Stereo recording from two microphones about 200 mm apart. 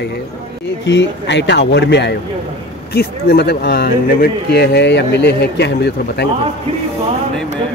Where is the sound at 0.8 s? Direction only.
60° left (ahead or behind).